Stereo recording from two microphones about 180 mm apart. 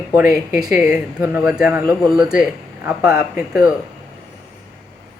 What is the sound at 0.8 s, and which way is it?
A man's voice, 5° right (ahead or behind).